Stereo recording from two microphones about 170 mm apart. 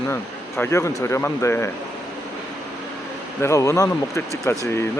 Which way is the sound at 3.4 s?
15° left (ahead or behind).